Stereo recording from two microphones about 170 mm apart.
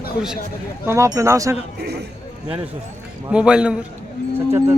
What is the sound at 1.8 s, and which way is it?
Speech, 75° right (ahead or behind).